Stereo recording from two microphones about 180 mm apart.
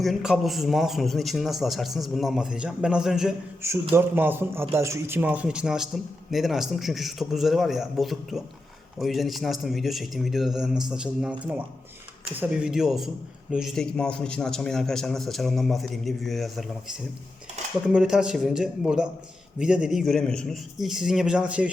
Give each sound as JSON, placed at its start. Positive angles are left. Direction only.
{"t": 0.0, "sound": "a man's voice", "side_deg": 0}